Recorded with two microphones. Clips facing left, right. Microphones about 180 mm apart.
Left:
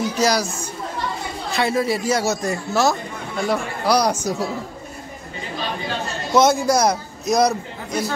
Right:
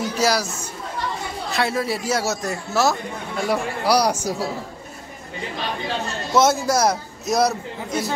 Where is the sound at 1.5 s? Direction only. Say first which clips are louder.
Left 3 dB; centre (ahead or behind).